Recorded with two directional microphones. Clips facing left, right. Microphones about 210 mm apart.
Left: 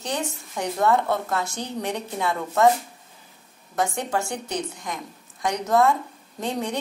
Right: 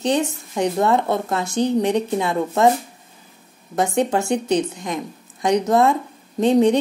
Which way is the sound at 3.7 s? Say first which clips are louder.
Right 6 dB; 20° right (ahead or behind).